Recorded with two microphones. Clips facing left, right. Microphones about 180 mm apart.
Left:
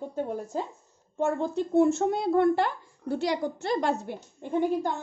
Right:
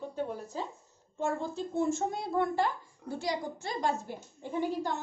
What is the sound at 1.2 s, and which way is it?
Speech, 60° left (ahead or behind).